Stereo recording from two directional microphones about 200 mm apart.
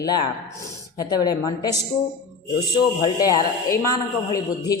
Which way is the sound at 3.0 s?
20° left (ahead or behind).